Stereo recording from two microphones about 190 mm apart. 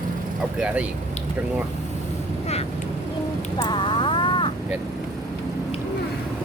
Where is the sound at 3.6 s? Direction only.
25° left (ahead or behind).